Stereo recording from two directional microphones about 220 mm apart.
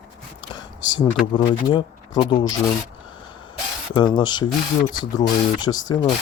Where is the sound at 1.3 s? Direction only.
20° left (ahead or behind).